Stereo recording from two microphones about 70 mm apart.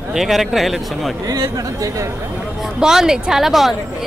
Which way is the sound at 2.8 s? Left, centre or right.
Centre.